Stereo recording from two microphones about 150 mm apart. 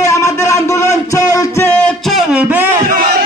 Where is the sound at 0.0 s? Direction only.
20° left (ahead or behind).